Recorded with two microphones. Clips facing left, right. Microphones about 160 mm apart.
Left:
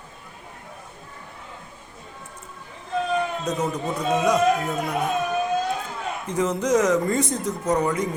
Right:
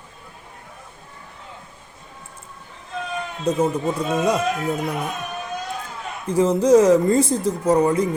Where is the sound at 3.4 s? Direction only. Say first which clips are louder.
Right 5 dB; 30° right (ahead or behind).